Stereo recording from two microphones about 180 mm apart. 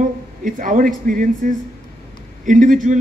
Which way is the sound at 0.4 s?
50° right (ahead or behind).